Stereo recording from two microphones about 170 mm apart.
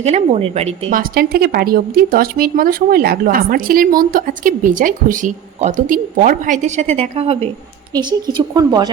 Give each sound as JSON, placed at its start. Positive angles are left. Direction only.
{"t": 0.0, "sound": "a woman's voice", "side_deg": -40}
{"t": 0.9, "sound": "speech", "side_deg": -55}
{"t": 7.9, "sound": "a woman's voice", "side_deg": -25}